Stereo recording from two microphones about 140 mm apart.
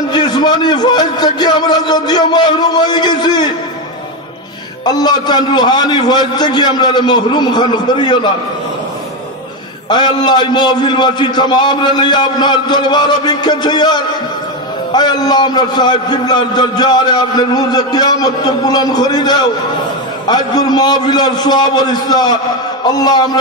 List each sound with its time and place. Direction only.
0.1 s a man's voice: 30° left (ahead or behind)
4.8 s a man's voice: 30° left (ahead or behind)
9.8 s a man's voice: 30° left (ahead or behind)